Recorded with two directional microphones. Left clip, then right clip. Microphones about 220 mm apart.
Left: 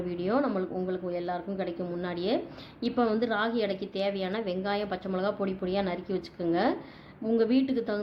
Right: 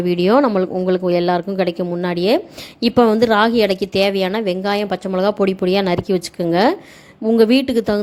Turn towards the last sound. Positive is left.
turn(degrees=-40)  # may be behind; listen again after turning